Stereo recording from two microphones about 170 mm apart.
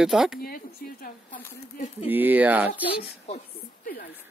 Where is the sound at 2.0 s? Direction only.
10° right (ahead or behind).